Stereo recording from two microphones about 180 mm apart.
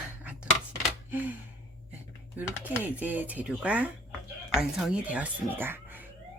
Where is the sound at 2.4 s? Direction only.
10° right (ahead or behind).